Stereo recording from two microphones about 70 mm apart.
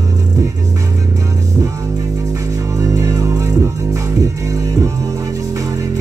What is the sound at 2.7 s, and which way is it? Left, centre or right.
Music, right.